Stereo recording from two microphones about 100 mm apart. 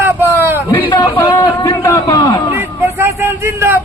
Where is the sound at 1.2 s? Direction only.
45° left (ahead or behind).